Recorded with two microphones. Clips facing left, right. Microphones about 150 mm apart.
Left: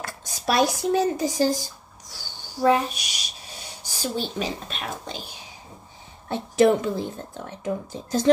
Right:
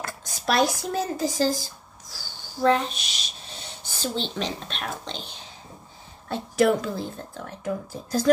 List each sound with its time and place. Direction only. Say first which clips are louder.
0.0 s speech: left 1 dB; 15° left (ahead or behind)
6.2 s speech: left 3 dB; 20° left (ahead or behind)